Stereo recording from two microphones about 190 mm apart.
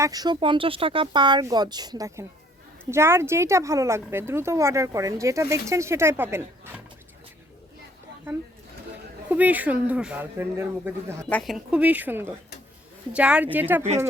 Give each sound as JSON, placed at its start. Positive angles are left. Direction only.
{"t": 0.0, "sound": "speech", "side_deg": -20}
{"t": 9.3, "sound": "speech", "side_deg": -10}
{"t": 11.3, "sound": "speech", "side_deg": 5}
{"t": 11.5, "sound": "speech", "side_deg": -5}